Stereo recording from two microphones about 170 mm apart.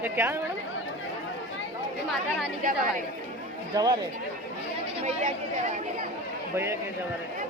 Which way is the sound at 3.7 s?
25° right (ahead or behind).